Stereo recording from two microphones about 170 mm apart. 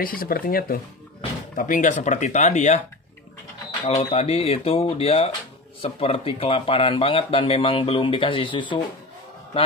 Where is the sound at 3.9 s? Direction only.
40° left (ahead or behind).